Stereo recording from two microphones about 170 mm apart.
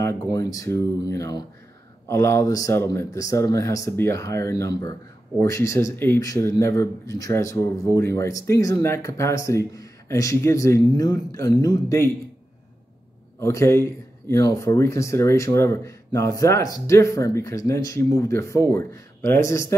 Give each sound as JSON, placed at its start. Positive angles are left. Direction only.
{"t": 0.0, "sound": "speech", "side_deg": 20}
{"t": 13.4, "sound": "speech", "side_deg": 15}